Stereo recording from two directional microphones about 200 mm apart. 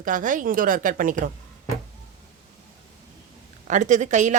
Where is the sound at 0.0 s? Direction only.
40° right (ahead or behind).